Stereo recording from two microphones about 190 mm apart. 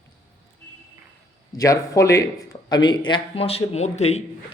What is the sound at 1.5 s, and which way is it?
A man's voice, 20° left (ahead or behind).